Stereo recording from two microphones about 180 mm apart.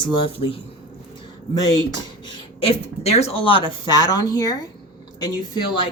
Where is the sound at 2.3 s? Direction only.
30° left (ahead or behind).